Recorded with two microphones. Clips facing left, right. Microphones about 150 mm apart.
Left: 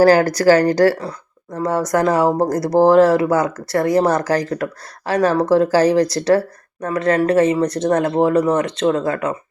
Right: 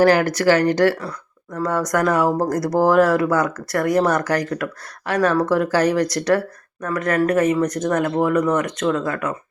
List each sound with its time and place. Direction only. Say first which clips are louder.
0.0 s speech: left 3 dB; 35° left (ahead or behind)
1.5 s speech: left 3 dB; 25° left (ahead or behind)